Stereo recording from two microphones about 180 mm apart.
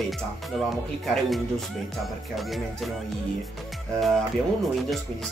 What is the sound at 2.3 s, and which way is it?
Speech, centre (ahead or behind).